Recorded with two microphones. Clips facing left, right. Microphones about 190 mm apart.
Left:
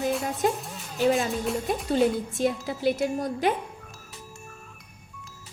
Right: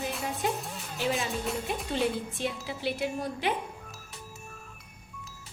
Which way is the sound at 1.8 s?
45° left (ahead or behind).